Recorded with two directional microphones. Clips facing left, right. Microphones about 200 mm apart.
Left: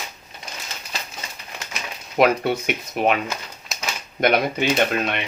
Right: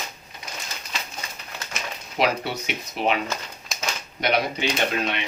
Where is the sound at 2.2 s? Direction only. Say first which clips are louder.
Left 6 dB; 50° left (ahead or behind).